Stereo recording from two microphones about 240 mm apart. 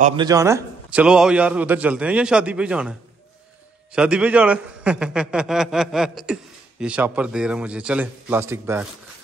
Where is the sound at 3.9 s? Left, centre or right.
Centre.